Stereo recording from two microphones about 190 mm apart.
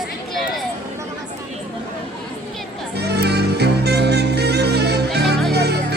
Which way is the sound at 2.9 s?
60° right (ahead or behind).